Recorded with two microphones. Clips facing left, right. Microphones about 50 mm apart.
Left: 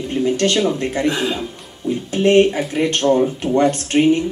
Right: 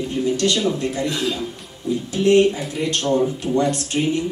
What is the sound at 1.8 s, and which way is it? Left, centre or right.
Speech, left.